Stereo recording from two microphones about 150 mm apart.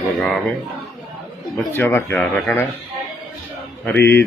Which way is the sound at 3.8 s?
15° left (ahead or behind).